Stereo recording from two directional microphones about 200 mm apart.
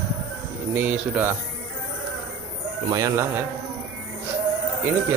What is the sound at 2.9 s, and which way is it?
Speech, 15° right (ahead or behind).